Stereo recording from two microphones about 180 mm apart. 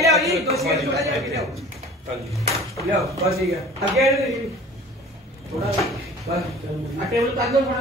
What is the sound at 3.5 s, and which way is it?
Speech, centre (ahead or behind).